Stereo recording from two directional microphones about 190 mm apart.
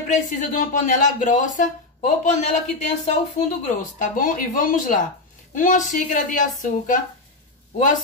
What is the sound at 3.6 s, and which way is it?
Speech, 45° left (ahead or behind).